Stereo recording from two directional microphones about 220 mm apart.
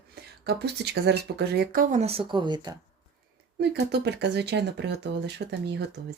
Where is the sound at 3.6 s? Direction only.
50° right (ahead or behind).